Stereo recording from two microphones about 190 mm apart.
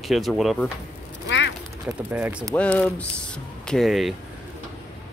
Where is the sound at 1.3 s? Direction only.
75° left (ahead or behind).